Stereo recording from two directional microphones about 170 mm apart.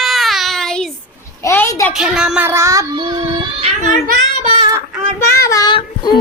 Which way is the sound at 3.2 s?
35° right (ahead or behind).